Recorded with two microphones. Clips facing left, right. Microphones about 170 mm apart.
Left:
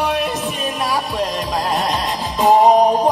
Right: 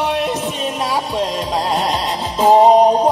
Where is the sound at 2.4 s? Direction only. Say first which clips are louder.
Right 2 dB; 25° right (ahead or behind).